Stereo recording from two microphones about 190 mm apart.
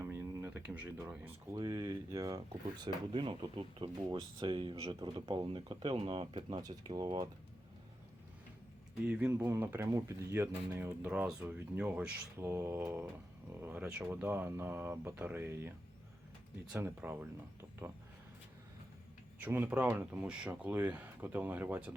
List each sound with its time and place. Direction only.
0.0 s a sound: 10° right (ahead or behind)
1.5 s speech: 20° right (ahead or behind)
9.0 s speech: 5° right (ahead or behind)
16.7 s speech: 10° right (ahead or behind)
19.4 s speech: 10° right (ahead or behind)